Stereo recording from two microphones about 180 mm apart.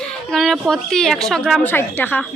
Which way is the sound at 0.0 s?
5° left (ahead or behind).